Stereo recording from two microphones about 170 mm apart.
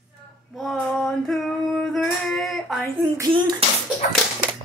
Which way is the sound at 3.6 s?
35° right (ahead or behind).